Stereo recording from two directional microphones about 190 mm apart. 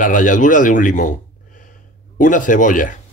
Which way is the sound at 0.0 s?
45° left (ahead or behind).